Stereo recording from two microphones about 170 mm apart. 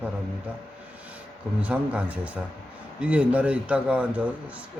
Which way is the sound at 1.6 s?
5° right (ahead or behind).